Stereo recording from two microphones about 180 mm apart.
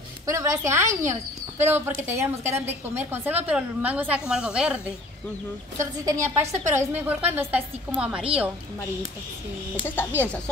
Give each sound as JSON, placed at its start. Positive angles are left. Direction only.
{"t": 0.3, "sound": "a woman's voice", "side_deg": -15}
{"t": 5.8, "sound": "a woman's voice", "side_deg": -15}
{"t": 6.4, "sound": "a woman's voice", "side_deg": -40}
{"t": 6.7, "sound": "a woman's voice", "side_deg": -10}
{"t": 9.8, "sound": "speech", "side_deg": 10}